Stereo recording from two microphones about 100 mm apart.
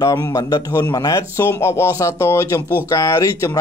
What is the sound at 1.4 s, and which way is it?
Speech, 25° left (ahead or behind).